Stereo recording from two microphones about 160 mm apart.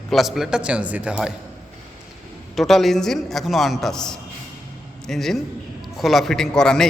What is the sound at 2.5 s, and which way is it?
A man's voice, centre (ahead or behind).